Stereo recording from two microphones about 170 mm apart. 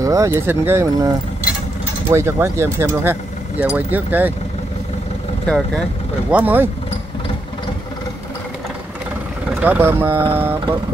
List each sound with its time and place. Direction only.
0.0 s speech: 20° right (ahead or behind)
6.3 s speech: 10° right (ahead or behind)
9.6 s speech: 10° right (ahead or behind)